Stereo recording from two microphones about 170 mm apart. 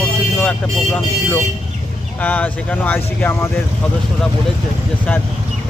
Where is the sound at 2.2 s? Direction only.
10° left (ahead or behind).